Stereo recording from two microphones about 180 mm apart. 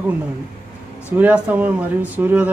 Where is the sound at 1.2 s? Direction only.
10° right (ahead or behind).